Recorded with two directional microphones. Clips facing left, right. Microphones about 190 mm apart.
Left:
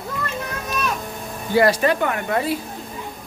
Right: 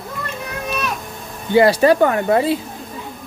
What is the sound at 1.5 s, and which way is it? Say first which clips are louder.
Speech: right 5 dB; 25° right (ahead or behind).